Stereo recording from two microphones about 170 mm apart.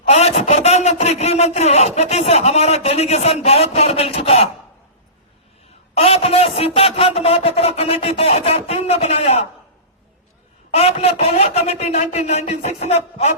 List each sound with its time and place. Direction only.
0.1 s speech: 40° left (ahead or behind)
6.0 s speech: 35° left (ahead or behind)
10.7 s speech: 35° left (ahead or behind)